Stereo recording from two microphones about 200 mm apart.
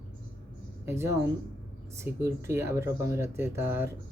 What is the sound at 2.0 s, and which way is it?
Speech, 15° right (ahead or behind).